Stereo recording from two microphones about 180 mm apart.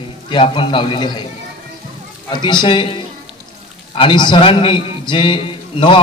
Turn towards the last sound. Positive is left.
turn(degrees=30)  # may be behind; listen again after turning